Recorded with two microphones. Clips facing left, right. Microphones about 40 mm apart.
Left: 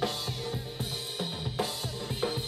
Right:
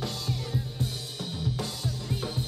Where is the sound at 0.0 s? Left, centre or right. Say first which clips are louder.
Left 1 dB; centre.